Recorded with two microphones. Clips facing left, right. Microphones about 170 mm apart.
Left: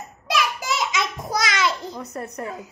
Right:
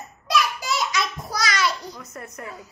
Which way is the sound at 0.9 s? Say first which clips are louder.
Left 2 dB; 20° left (ahead or behind).